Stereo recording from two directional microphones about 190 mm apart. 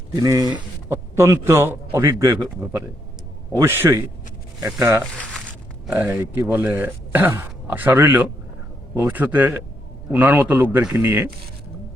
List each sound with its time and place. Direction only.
0.2 s a man's voice: 20° right (ahead or behind)
3.5 s a man's voice: 15° right (ahead or behind)